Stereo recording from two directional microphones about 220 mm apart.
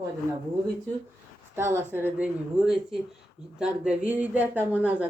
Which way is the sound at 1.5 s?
10° right (ahead or behind).